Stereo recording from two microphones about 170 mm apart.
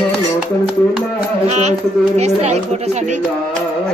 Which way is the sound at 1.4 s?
40° right (ahead or behind).